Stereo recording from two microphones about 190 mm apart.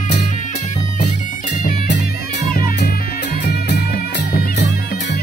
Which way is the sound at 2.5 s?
50° left (ahead or behind).